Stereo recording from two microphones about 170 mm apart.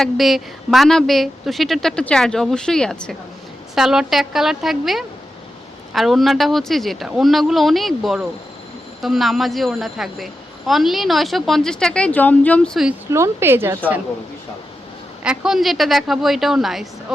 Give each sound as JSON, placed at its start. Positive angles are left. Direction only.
{"t": 0.0, "sound": "a woman's voice", "side_deg": 0}
{"t": 13.1, "sound": "a woman's voice", "side_deg": -15}
{"t": 15.2, "sound": "a woman's voice", "side_deg": -5}